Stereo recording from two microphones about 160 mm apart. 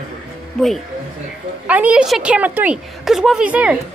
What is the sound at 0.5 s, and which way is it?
A woman's voice, centre (ahead or behind).